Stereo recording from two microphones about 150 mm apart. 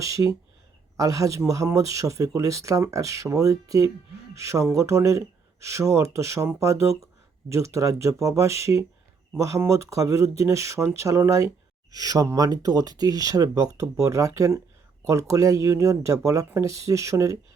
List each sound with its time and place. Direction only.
0.0 s speech: 20° right (ahead or behind)